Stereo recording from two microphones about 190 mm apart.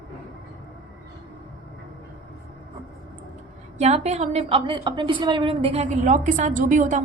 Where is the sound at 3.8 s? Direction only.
35° right (ahead or behind).